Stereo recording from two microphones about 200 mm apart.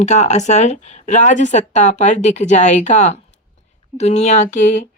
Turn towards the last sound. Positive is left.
turn(degrees=40)  # may be behind; listen again after turning